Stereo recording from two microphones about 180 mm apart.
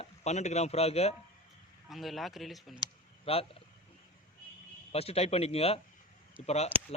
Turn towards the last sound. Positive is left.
turn(degrees=35)  # may be behind; listen again after turning